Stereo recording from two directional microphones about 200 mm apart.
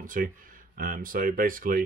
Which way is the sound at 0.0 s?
40° right (ahead or behind).